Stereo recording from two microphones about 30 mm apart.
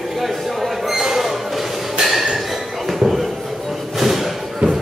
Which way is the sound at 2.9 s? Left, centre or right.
Centre.